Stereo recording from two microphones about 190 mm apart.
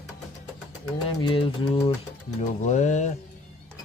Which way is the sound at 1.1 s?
25° left (ahead or behind).